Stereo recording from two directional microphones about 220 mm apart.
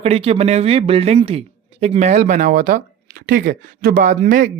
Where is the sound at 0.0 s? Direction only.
25° right (ahead or behind).